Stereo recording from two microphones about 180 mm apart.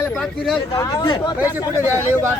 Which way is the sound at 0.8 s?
25° left (ahead or behind).